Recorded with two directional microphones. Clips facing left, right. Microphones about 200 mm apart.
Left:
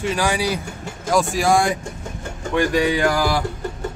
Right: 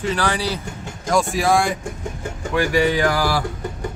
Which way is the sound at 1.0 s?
Centre (ahead or behind).